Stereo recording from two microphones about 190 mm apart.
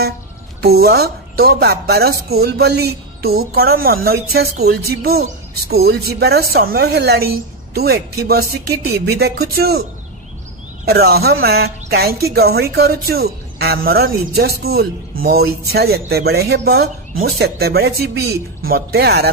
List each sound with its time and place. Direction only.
0.6 s speech: 55° right (ahead or behind)
10.9 s speech: 55° right (ahead or behind)